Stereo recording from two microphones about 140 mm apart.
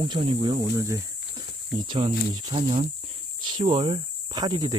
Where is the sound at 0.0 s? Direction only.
35° right (ahead or behind).